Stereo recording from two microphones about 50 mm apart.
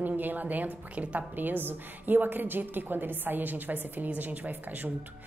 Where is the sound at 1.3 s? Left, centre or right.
Right.